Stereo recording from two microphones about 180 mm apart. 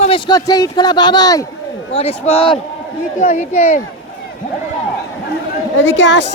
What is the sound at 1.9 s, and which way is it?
Speech, 35° left (ahead or behind).